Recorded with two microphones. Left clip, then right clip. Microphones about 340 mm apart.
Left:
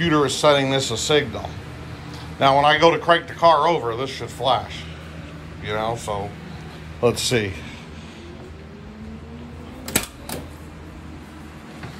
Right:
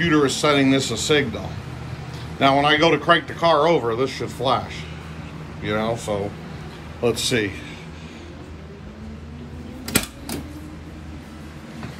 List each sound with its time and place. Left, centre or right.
0.0 s speech: centre
7.0 s speech: centre